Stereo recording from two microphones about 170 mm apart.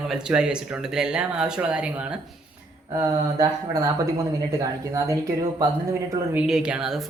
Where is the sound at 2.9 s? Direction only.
20° right (ahead or behind).